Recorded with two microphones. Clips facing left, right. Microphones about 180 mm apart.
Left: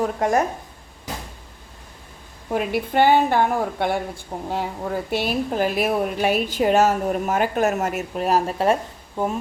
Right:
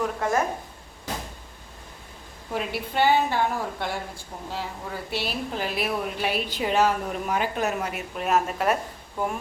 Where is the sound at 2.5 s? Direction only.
50° left (ahead or behind).